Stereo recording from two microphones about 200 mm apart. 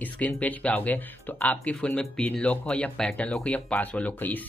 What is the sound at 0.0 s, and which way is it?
Speech, 10° left (ahead or behind).